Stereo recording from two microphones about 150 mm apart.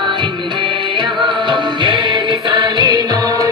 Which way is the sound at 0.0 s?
30° right (ahead or behind).